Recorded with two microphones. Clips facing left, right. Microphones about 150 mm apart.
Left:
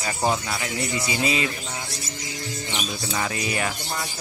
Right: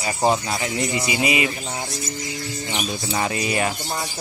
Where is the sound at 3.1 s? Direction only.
25° right (ahead or behind).